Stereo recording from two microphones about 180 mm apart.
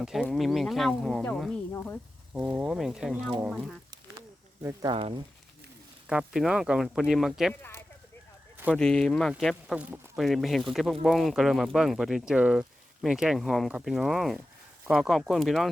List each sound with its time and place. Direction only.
0.0 s speech: 5° right (ahead or behind)
2.3 s speech: 10° right (ahead or behind)
4.6 s speech: 20° right (ahead or behind)
6.1 s speech: 5° right (ahead or behind)
8.7 s speech: 5° left (ahead or behind)